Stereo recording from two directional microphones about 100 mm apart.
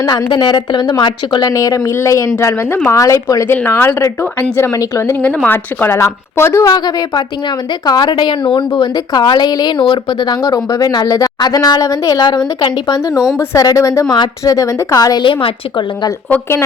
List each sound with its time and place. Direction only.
0.0 s speech: 40° left (ahead or behind)
3.5 s a woman's voice: 20° left (ahead or behind)
5.2 s a woman's voice: 15° left (ahead or behind)
6.7 s a woman's voice: 45° left (ahead or behind)
13.0 s speech: 30° left (ahead or behind)
15.2 s a woman's voice: 60° left (ahead or behind)
16.3 s a woman's voice: 25° left (ahead or behind)